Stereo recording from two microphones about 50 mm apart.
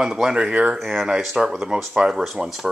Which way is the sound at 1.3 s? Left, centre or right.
Centre.